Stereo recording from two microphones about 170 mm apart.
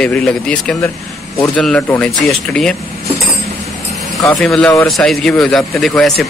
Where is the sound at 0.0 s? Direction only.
5° left (ahead or behind).